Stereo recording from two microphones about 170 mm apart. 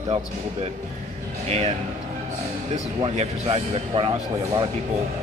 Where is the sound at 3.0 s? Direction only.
35° right (ahead or behind).